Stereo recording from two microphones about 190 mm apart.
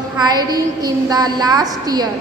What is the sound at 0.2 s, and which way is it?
A woman's voice, 20° right (ahead or behind).